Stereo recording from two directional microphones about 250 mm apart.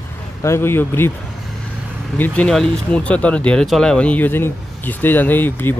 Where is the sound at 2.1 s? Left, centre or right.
Centre.